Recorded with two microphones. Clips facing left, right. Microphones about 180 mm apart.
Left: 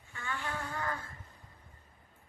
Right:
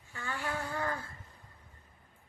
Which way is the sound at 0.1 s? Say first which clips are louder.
Right 2 dB; 35° right (ahead or behind).